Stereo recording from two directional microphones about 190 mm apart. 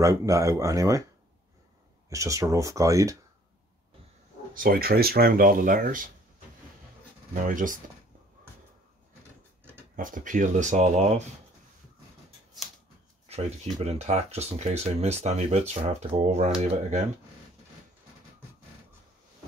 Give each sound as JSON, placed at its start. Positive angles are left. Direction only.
{"t": 0.0, "sound": "speech", "side_deg": -15}
{"t": 2.0, "sound": "speech", "side_deg": -15}
{"t": 4.6, "sound": "speech", "side_deg": -50}
{"t": 7.3, "sound": "speech", "side_deg": -45}
{"t": 9.9, "sound": "speech", "side_deg": -45}
{"t": 13.3, "sound": "speech", "side_deg": -35}